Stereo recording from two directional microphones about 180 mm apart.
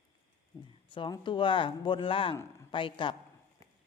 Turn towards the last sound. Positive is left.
turn(degrees=25)  # may be behind; listen again after turning